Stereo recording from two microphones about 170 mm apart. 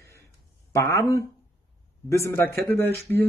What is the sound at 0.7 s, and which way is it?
Speech, 15° left (ahead or behind).